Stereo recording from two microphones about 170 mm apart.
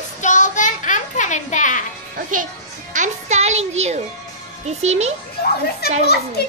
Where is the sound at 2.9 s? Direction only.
45° right (ahead or behind).